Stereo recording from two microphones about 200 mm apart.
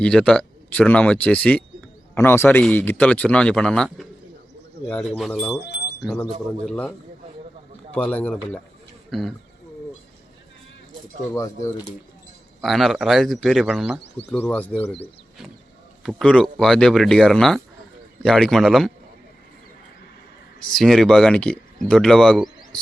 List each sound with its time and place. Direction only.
0.0 s speech: 5° left (ahead or behind)
5.6 s bird: 55° left (ahead or behind)
6.7 s speech: 5° left (ahead or behind)
7.9 s speech: 5° left (ahead or behind)
12.6 s speech: centre (ahead or behind)
16.0 s speech: 5° left (ahead or behind)
20.7 s speech: centre (ahead or behind)